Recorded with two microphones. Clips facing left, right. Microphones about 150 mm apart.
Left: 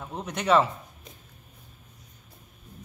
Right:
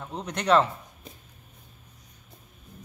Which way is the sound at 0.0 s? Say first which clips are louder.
Even; 5° left (ahead or behind).